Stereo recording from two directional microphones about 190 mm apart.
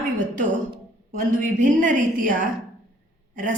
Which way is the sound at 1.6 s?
40° right (ahead or behind).